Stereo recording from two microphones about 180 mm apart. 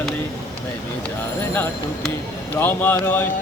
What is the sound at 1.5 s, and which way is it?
Music, 10° left (ahead or behind).